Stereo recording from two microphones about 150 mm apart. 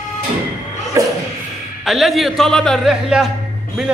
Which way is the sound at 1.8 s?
Centre (ahead or behind).